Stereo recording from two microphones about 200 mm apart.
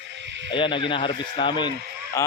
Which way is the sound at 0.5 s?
25° left (ahead or behind).